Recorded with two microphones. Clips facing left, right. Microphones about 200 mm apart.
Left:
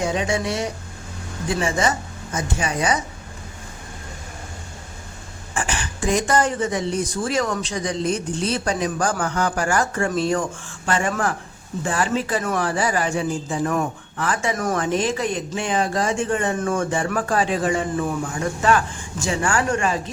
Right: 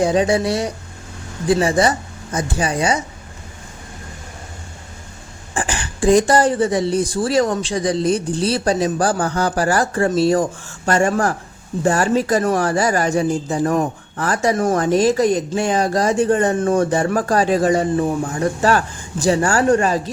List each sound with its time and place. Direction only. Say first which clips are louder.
0.0 s speech: right 7 dB; 35° right (ahead or behind)
5.5 s speech: right 4 dB; 30° right (ahead or behind)